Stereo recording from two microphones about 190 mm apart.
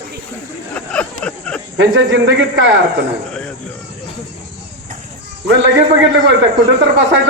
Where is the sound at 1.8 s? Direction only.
75° right (ahead or behind).